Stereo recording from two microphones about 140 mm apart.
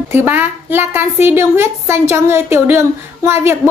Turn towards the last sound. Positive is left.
turn(degrees=-20)  # may be behind; listen again after turning